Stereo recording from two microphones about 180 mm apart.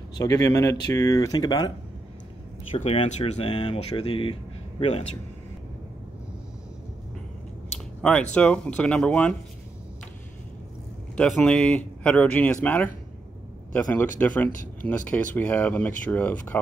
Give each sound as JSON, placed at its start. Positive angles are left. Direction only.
{"t": 0.2, "sound": "speech", "side_deg": 20}
{"t": 2.7, "sound": "speech", "side_deg": 35}
{"t": 8.0, "sound": "speech", "side_deg": 5}
{"t": 11.1, "sound": "speech", "side_deg": 5}